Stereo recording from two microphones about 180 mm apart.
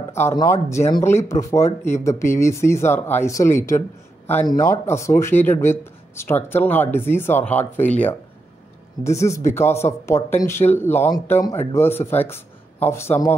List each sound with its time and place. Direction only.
0.1 s speech: 15° left (ahead or behind)